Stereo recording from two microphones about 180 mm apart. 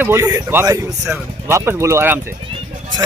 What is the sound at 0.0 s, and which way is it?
A man's voice, 15° right (ahead or behind).